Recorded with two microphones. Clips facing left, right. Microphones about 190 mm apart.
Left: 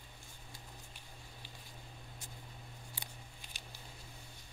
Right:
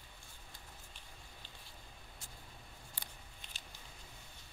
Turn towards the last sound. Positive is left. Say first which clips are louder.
# left 2 dB
turn(degrees=10)  # may be behind; listen again after turning